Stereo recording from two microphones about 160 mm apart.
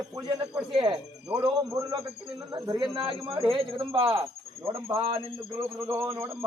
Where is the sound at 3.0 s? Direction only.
35° right (ahead or behind).